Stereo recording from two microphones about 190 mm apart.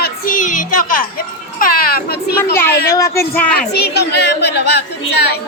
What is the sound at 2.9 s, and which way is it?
Speech, 15° left (ahead or behind).